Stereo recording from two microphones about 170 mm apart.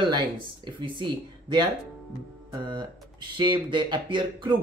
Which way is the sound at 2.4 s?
25° right (ahead or behind).